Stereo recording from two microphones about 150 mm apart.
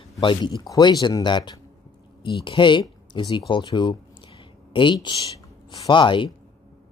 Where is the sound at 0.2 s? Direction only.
30° left (ahead or behind).